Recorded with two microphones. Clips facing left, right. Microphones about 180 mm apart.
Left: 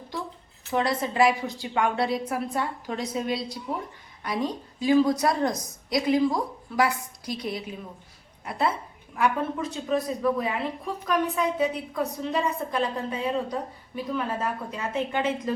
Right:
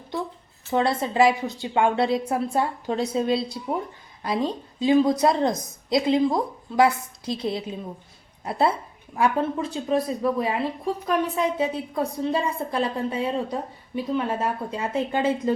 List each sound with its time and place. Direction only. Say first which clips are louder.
0.7 s a woman's voice: right 3 dB; 25° right (ahead or behind)